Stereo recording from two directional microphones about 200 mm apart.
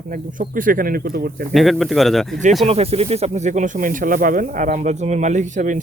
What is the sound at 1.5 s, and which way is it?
Speech, centre (ahead or behind).